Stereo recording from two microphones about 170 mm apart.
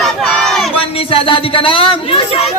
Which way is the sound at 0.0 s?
Centre (ahead or behind).